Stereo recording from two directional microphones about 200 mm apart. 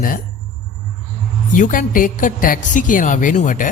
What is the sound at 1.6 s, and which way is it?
Speech, 40° left (ahead or behind).